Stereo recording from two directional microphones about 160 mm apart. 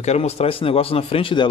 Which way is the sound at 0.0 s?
45° left (ahead or behind).